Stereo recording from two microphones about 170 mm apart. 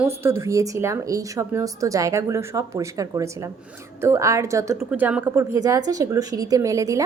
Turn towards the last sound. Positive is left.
turn(degrees=-20)  # may be behind; listen again after turning